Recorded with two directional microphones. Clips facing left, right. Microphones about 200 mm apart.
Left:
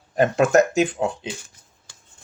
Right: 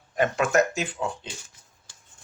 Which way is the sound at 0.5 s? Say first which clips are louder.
Left 6 dB; 50° left (ahead or behind).